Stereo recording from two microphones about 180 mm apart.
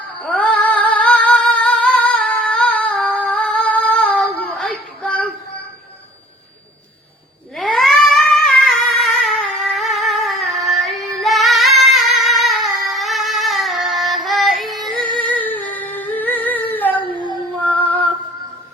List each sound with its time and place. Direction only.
0.2 s female singing: 5° left (ahead or behind)
7.5 s a sound: centre (ahead or behind)
10.7 s female singing: centre (ahead or behind)
12.9 s music: centre (ahead or behind)
15.3 s humming: 10° left (ahead or behind)
17.1 s a sound: 25° right (ahead or behind)
17.6 s female singing: 10° left (ahead or behind)